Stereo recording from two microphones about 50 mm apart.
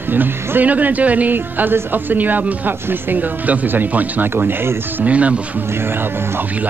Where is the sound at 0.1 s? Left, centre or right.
Right.